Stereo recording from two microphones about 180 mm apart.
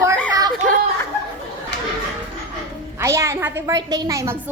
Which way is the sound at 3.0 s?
15° right (ahead or behind).